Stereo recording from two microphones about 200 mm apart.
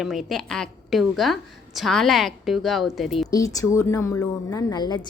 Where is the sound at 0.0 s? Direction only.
Centre (ahead or behind).